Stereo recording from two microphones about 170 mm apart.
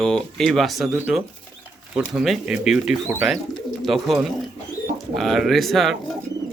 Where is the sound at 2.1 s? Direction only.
5° right (ahead or behind).